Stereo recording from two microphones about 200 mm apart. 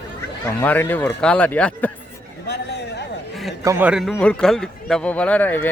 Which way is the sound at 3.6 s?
10° right (ahead or behind).